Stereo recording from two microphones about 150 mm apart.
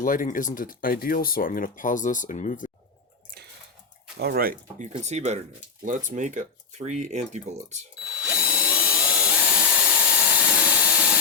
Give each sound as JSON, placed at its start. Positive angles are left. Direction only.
{"t": 0.0, "sound": "speech", "side_deg": 60}
{"t": 4.2, "sound": "speech", "side_deg": -90}
{"t": 4.8, "sound": "speech", "side_deg": -45}
{"t": 5.8, "sound": "speech", "side_deg": -60}
{"t": 8.2, "sound": "drill", "side_deg": -5}